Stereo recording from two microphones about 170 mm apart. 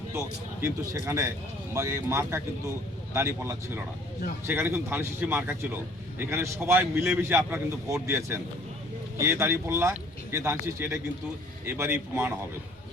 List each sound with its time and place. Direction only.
0.6 s a man's voice: 20° right (ahead or behind)